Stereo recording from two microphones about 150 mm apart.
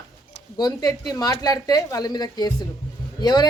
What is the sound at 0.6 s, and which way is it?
Speech, 25° left (ahead or behind).